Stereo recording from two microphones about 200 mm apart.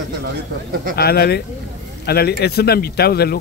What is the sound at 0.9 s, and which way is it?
Speech, 50° left (ahead or behind).